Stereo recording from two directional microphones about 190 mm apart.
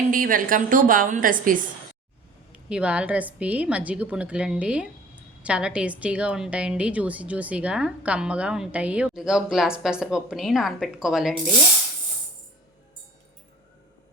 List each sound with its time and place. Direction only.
0.1 s a woman's voice: 45° right (ahead or behind)
2.5 s a woman's voice: 5° right (ahead or behind)